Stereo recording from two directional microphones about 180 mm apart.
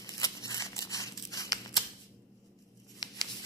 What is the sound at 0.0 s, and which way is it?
Scissors, 20° left (ahead or behind).